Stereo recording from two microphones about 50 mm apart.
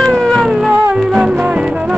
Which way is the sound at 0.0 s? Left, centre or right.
Centre.